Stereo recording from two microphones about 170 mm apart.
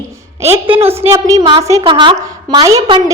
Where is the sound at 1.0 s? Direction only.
15° right (ahead or behind).